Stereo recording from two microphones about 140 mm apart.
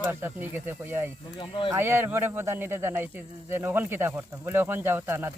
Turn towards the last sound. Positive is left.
turn(degrees=-15)  # may be behind; listen again after turning